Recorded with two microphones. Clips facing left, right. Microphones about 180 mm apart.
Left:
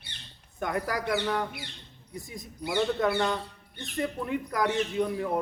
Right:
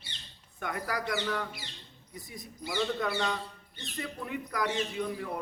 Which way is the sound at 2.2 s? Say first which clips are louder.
Left 4 dB; 45° left (ahead or behind).